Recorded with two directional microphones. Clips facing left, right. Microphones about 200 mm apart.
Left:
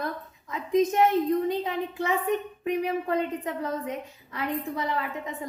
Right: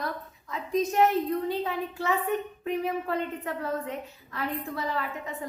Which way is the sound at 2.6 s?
15° left (ahead or behind).